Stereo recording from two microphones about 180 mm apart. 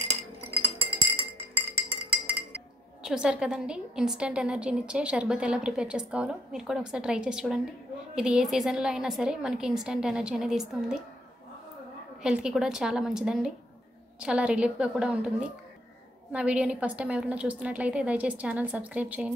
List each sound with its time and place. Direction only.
1.9 s music: 30° right (ahead or behind)
3.0 s a woman's voice: 5° right (ahead or behind)
12.2 s a woman's voice: 5° right (ahead or behind)